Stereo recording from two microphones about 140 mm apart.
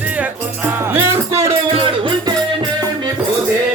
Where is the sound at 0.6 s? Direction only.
15° right (ahead or behind).